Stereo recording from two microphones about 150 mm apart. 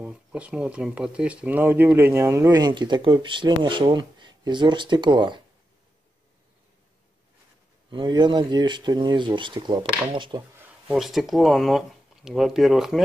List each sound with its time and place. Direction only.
0.0 s speech: 5° right (ahead or behind); by 5.4 s 30° right (ahead or behind)
7.9 s speech: 30° right (ahead or behind)
10.9 s speech: centre (ahead or behind)